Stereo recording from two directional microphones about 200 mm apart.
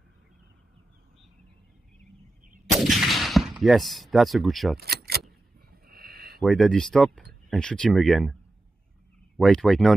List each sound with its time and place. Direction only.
2.6 s gunshot: centre (ahead or behind)
4.7 s keys jangling: 50° right (ahead or behind)
5.7 s a sound: 50° right (ahead or behind)
6.4 s speech: centre (ahead or behind)
9.4 s speech: centre (ahead or behind)